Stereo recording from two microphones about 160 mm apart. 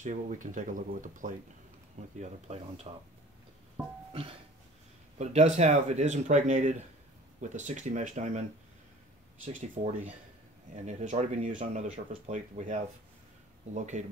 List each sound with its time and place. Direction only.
0.0 s speech: 50° right (ahead or behind)
2.1 s speech: 40° right (ahead or behind)
4.1 s music: 35° right (ahead or behind)
5.2 s speech: 45° right (ahead or behind)
13.7 s speech: 50° right (ahead or behind)